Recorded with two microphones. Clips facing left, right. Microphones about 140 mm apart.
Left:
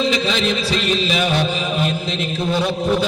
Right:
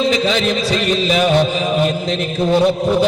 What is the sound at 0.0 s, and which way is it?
Music, 45° right (ahead or behind).